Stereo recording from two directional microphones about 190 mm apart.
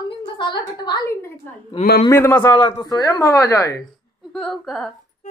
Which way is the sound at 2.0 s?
15° left (ahead or behind).